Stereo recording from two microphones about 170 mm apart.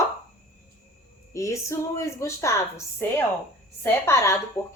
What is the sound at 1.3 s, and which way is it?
Speech, 20° left (ahead or behind).